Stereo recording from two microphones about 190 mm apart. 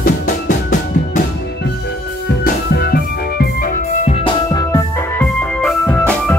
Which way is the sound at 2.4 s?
55° left (ahead or behind).